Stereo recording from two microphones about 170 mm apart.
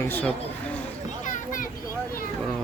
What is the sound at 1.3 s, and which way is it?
Children playing, 50° left (ahead or behind).